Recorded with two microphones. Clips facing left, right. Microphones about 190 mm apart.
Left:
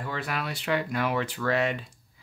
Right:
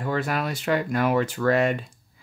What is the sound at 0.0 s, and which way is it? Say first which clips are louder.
Speech: right 6 dB; 45° right (ahead or behind).